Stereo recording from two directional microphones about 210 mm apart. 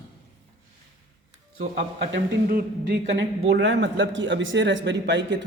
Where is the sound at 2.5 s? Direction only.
50° right (ahead or behind).